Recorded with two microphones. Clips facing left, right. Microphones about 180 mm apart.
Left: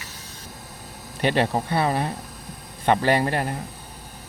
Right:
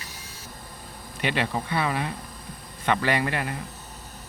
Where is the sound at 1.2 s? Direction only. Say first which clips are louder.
Left 5 dB; 35° left (ahead or behind).